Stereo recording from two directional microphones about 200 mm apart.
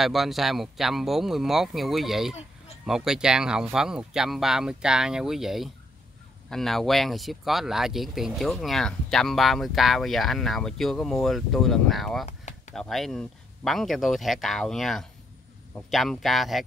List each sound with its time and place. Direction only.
0.0 s speech: centre (ahead or behind)
12.3 s a sound: 35° left (ahead or behind)
12.7 s speech: centre (ahead or behind)